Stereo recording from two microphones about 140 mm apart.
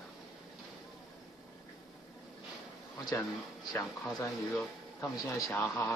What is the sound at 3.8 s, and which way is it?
Speech, centre (ahead or behind).